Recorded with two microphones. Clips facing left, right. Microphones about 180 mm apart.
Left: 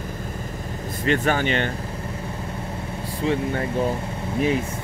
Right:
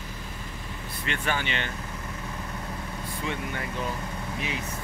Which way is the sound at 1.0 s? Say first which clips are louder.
Left 9 dB; 40° left (ahead or behind).